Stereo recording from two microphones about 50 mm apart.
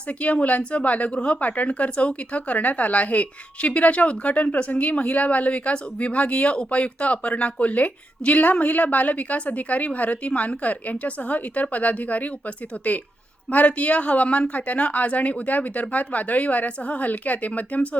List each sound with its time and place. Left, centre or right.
0.1 s a woman's voice: left